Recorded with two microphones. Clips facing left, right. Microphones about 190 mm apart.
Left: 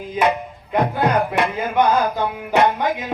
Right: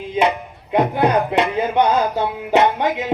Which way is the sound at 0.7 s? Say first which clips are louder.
Right 2 dB; 20° right (ahead or behind).